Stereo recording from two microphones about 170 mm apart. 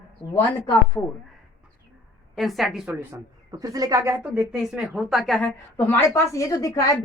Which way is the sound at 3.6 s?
20° right (ahead or behind).